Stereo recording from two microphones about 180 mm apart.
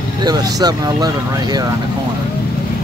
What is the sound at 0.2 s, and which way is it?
Speech, 20° right (ahead or behind).